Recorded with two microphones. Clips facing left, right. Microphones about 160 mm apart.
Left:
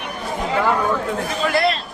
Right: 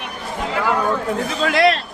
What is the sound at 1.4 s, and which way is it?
Speech, 90° right.